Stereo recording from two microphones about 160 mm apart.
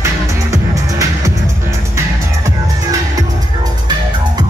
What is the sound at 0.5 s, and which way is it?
Music, 20° right (ahead or behind).